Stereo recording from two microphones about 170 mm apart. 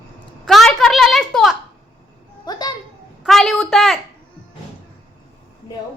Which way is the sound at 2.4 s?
25° left (ahead or behind).